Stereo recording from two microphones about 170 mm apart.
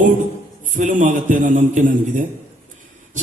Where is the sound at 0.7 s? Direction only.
45° right (ahead or behind).